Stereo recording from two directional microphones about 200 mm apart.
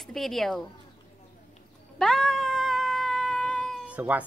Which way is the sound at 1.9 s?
5° left (ahead or behind).